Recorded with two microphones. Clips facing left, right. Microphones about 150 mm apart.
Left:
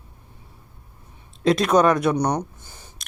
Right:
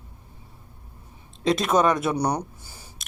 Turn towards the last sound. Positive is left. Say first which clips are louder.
# even
turn(degrees=-10)  # may be behind; listen again after turning